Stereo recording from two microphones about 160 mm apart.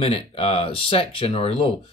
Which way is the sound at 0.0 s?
35° left (ahead or behind).